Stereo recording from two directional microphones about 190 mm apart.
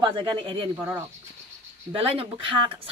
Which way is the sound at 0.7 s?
15° right (ahead or behind).